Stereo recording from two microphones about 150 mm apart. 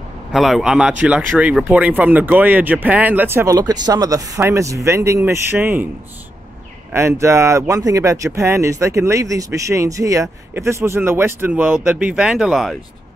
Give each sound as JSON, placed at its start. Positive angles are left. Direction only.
{"t": 0.3, "sound": "speech", "side_deg": 0}
{"t": 6.9, "sound": "speech", "side_deg": -20}